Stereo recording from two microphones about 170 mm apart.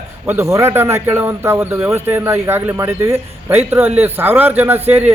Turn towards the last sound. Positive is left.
turn(degrees=-10)  # may be behind; listen again after turning